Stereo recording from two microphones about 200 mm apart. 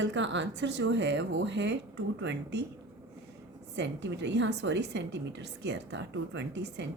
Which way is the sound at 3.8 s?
60° right (ahead or behind).